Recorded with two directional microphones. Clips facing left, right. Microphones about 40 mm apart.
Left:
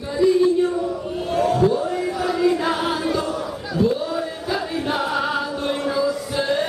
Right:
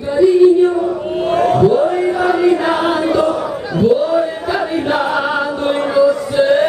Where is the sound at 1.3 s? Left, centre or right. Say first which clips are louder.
Right 6 dB; right.